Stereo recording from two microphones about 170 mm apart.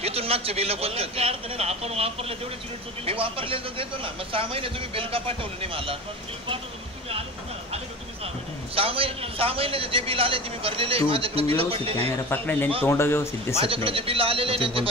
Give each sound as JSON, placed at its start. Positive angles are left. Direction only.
{"t": 0.0, "sound": "a man's voice", "side_deg": -35}
{"t": 8.7, "sound": "a man's voice", "side_deg": -35}
{"t": 12.3, "sound": "speech", "side_deg": 10}
{"t": 13.6, "sound": "a man's voice", "side_deg": -35}